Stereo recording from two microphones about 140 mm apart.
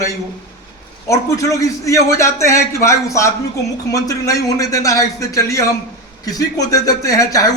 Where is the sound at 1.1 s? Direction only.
25° left (ahead or behind).